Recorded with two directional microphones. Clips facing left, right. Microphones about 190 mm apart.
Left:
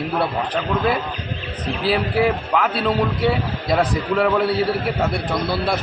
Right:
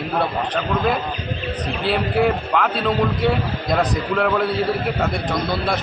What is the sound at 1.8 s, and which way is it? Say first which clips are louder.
A man's voice: even; 5° left (ahead or behind).